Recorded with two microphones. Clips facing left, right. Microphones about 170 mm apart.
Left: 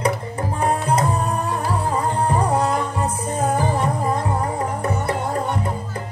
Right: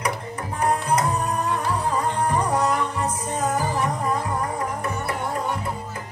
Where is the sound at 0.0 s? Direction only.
30° left (ahead or behind).